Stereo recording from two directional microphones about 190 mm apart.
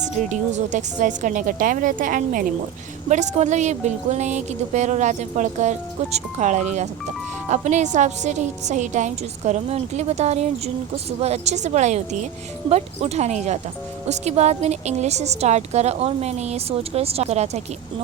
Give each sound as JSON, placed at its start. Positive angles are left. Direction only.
{"t": 0.3, "sound": "a woman's voice", "side_deg": -40}